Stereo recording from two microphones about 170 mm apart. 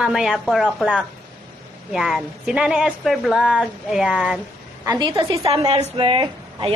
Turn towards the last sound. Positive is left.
turn(degrees=-30)  # may be behind; listen again after turning